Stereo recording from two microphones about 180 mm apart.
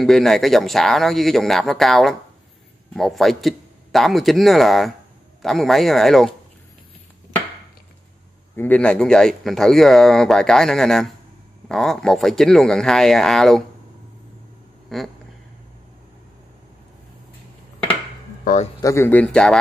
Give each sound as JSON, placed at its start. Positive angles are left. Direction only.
{"t": 0.0, "sound": "speech", "side_deg": 0}
{"t": 8.5, "sound": "speech", "side_deg": 10}
{"t": 14.9, "sound": "speech", "side_deg": 0}
{"t": 18.4, "sound": "a man's voice", "side_deg": 45}
{"t": 18.8, "sound": "speech", "side_deg": 15}